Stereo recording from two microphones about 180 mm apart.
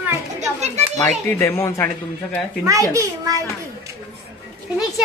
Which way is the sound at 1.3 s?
15° left (ahead or behind).